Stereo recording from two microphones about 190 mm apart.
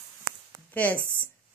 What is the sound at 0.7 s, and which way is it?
Speech, 10° left (ahead or behind).